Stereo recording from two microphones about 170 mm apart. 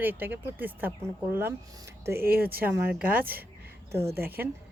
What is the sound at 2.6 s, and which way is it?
Speech, 10° right (ahead or behind).